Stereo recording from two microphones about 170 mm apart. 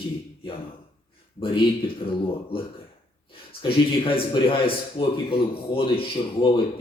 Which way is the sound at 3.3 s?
35° left (ahead or behind).